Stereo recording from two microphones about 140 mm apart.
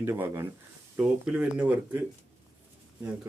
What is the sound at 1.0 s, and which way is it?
Speech, 5° right (ahead or behind).